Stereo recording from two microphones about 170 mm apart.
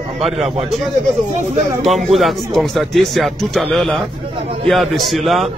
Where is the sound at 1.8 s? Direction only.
Centre (ahead or behind).